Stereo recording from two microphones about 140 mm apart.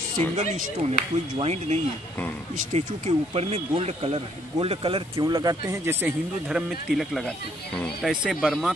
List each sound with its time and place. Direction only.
0.4 s speech: 55° right (ahead or behind)
5.1 s speech: 25° right (ahead or behind)
6.5 s speech: centre (ahead or behind)
8.1 s speech: 5° right (ahead or behind)